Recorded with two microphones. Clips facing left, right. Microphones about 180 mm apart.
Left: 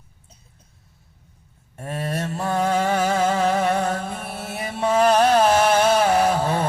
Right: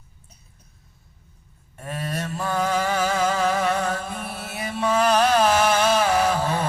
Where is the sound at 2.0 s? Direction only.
30° left (ahead or behind).